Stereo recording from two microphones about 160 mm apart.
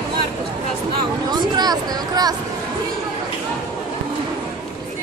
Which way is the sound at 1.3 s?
25° right (ahead or behind).